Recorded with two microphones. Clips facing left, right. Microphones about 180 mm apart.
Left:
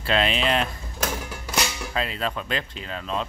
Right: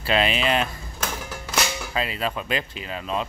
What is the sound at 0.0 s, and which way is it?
Speech, 5° right (ahead or behind).